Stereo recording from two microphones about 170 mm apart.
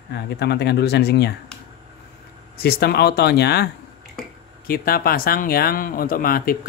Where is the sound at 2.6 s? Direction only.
65° left (ahead or behind).